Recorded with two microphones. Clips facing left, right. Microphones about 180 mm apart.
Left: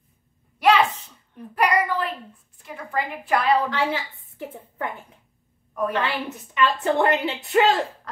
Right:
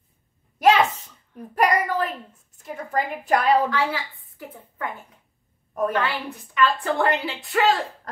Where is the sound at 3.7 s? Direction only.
25° left (ahead or behind).